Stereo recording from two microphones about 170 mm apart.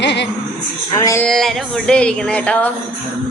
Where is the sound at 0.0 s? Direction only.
90° left.